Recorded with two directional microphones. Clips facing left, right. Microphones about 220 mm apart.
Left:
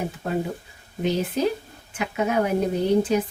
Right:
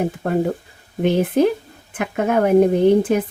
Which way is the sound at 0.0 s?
55° right (ahead or behind).